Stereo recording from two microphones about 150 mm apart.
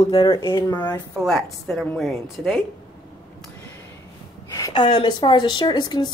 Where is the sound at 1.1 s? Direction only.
Centre (ahead or behind).